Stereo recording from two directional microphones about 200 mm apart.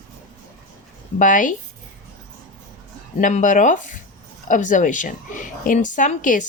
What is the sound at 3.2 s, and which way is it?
Speech, 40° left (ahead or behind).